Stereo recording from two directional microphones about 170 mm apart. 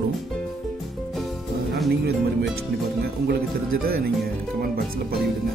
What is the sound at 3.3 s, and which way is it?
Speech, 65° right (ahead or behind).